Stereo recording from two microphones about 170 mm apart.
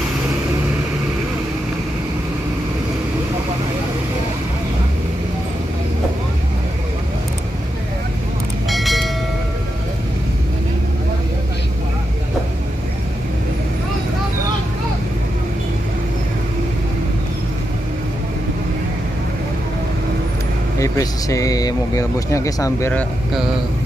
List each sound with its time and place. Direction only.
8.6 s bell: centre (ahead or behind)
20.8 s speech: 20° left (ahead or behind)